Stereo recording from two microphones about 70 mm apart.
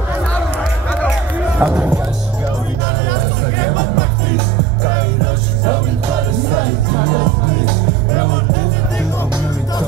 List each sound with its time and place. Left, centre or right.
1.6 s music: right
3.1 s music: left